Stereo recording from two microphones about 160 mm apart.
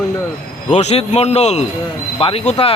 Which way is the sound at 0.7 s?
40° left (ahead or behind).